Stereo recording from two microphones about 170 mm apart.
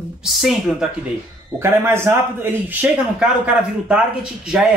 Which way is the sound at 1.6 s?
15° right (ahead or behind).